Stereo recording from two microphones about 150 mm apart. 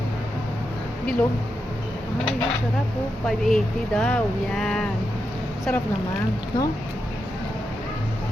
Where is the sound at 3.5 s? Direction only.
5° left (ahead or behind).